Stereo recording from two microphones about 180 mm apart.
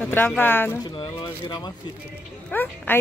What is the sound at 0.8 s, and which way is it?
Speech, 25° left (ahead or behind).